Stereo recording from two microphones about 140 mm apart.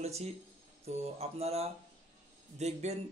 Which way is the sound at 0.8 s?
45° right (ahead or behind).